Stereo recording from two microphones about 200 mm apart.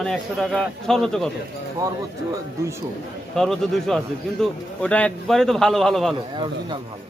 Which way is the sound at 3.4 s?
Centre (ahead or behind).